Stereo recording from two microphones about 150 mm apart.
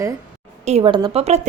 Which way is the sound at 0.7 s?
40° right (ahead or behind).